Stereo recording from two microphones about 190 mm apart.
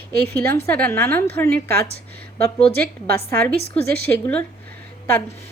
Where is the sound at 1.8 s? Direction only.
55° right (ahead or behind).